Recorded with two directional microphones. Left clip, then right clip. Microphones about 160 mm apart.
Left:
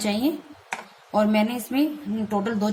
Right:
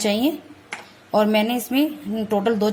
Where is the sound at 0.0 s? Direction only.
45° right (ahead or behind).